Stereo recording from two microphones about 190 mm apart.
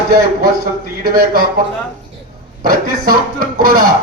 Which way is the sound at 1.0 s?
50° right (ahead or behind).